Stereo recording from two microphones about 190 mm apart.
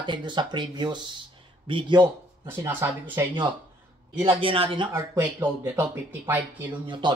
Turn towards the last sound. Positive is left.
turn(degrees=-25)  # may be behind; listen again after turning